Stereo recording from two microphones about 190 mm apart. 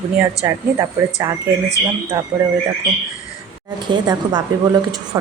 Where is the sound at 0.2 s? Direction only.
15° right (ahead or behind).